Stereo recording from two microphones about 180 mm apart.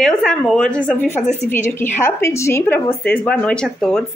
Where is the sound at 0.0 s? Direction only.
Centre (ahead or behind).